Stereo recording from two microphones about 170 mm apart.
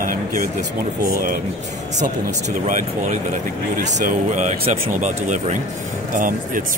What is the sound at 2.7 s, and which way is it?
Speech, 45° right (ahead or behind).